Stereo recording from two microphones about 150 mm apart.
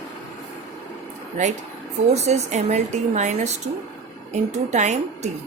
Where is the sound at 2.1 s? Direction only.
50° right (ahead or behind).